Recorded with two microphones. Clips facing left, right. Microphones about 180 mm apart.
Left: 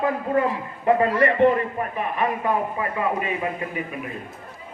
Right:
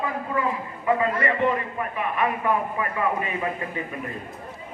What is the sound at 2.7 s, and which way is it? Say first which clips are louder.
Speech: left 1 dB; 20° left (ahead or behind).